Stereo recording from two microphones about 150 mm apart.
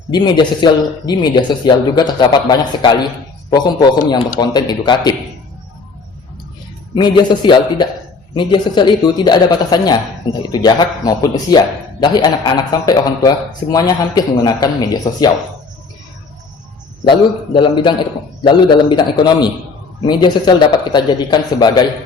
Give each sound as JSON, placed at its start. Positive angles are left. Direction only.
{"t": 0.1, "sound": "speech", "side_deg": 30}
{"t": 6.9, "sound": "a man's voice", "side_deg": 30}
{"t": 17.1, "sound": "a man's voice", "side_deg": 35}